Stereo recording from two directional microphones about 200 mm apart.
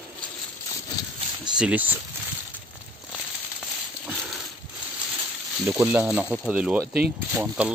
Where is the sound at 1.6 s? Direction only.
5° right (ahead or behind).